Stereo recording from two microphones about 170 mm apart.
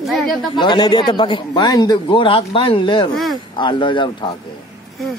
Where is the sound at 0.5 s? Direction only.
25° left (ahead or behind).